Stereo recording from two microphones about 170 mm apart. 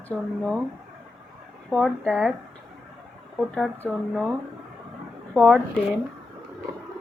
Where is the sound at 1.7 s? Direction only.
10° left (ahead or behind).